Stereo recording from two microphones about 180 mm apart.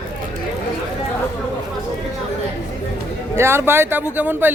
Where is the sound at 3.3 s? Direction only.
15° right (ahead or behind).